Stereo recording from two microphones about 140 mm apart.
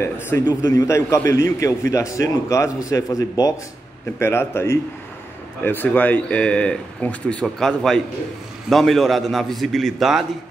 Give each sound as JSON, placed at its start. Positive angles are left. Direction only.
{"t": 0.0, "sound": "a man's voice", "side_deg": 15}